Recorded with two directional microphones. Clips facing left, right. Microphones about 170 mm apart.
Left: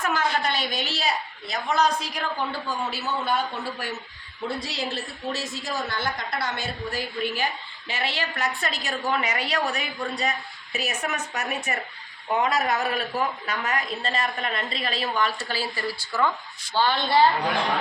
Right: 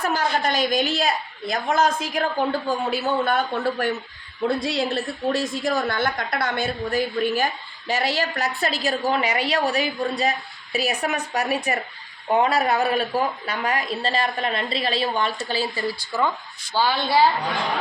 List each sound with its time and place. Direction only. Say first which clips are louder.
0.0 s a woman's voice: right 2 dB; 35° right (ahead or behind); by 17.2 s 5° right (ahead or behind)